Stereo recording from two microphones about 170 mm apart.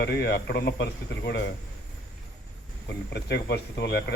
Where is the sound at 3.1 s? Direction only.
80° left.